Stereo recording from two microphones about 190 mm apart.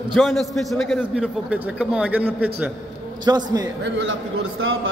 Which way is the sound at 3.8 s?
85° right.